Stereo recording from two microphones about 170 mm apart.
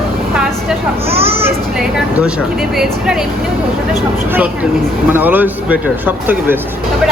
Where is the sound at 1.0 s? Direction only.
35° right (ahead or behind).